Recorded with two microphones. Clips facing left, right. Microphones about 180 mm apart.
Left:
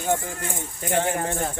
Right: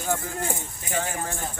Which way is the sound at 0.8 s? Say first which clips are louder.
Left 8 dB; 55° left (ahead or behind).